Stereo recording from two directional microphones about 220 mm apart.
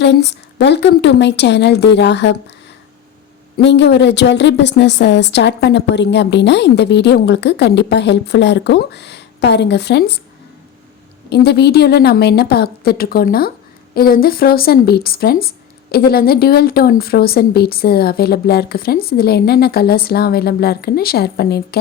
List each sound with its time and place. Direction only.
0.0 s speech: 50° left (ahead or behind)
3.6 s speech: 55° left (ahead or behind)
11.3 s speech: 50° left (ahead or behind)